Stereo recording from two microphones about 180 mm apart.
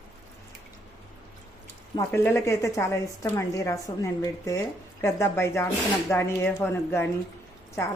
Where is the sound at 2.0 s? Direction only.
15° left (ahead or behind).